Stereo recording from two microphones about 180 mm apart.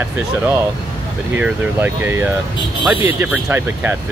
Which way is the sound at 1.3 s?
10° right (ahead or behind).